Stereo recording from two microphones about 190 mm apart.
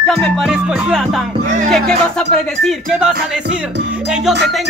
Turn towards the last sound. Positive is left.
turn(degrees=0)  # may be behind; listen again after turning